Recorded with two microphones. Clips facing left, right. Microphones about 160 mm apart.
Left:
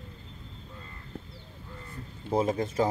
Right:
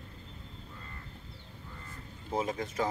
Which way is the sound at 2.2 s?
35° left (ahead or behind).